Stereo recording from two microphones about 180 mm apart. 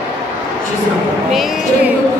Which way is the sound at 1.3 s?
Centre (ahead or behind).